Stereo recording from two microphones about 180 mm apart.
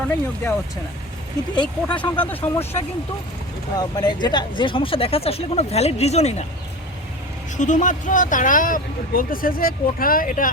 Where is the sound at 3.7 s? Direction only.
20° left (ahead or behind).